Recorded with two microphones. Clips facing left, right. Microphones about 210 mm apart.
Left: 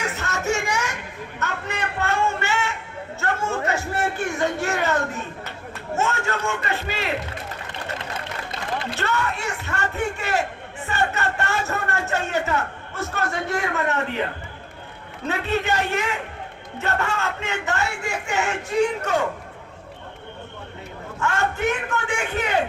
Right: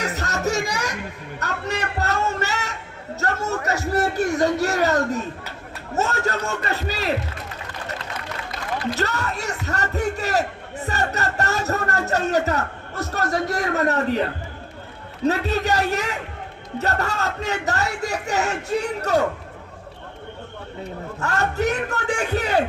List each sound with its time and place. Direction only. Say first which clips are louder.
0.0 s music: right 2 dB; 35° right (ahead or behind)
1.4 s a sound: right 2 dB; 40° right (ahead or behind)
3.2 s speech: even; 40° right (ahead or behind)
9.0 s speech: even; 40° right (ahead or behind)
15.3 s speech: right 2 dB; 40° right (ahead or behind)
21.2 s speech: right 1 dB; 40° right (ahead or behind)